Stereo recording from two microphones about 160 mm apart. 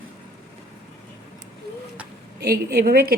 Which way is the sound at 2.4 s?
75° right (ahead or behind).